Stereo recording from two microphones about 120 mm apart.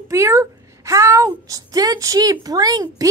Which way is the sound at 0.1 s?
25° right (ahead or behind).